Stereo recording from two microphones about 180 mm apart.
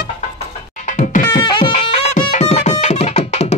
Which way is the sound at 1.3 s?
25° left (ahead or behind).